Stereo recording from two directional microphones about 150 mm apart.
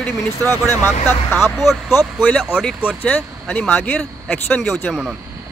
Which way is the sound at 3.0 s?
10° left (ahead or behind).